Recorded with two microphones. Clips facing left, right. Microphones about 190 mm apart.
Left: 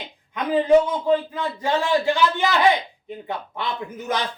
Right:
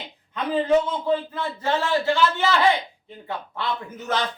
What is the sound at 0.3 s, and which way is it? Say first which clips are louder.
Speech: left 4 dB; 15° left (ahead or behind).